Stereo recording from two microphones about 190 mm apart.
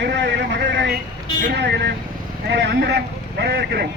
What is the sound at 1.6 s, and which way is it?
Speech, 60° right (ahead or behind).